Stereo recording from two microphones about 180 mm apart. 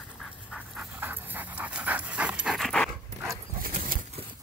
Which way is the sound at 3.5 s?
50° right (ahead or behind).